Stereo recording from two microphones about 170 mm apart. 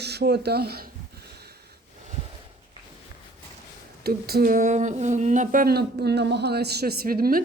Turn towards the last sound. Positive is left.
turn(degrees=-60)  # may be behind; listen again after turning